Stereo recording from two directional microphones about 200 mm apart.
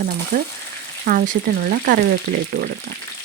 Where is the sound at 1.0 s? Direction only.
45° right (ahead or behind).